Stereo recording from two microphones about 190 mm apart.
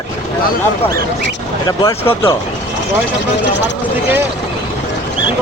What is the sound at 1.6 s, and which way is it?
Speech, 20° left (ahead or behind).